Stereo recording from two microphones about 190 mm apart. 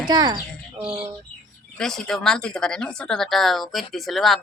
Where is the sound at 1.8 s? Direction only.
Centre (ahead or behind).